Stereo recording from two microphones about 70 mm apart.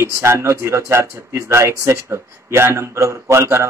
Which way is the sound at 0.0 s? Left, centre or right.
Right.